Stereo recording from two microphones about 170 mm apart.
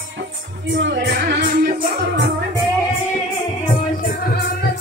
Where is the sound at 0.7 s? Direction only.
90° right.